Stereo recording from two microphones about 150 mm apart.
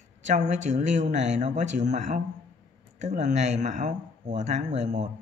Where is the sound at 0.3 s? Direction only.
55° right (ahead or behind).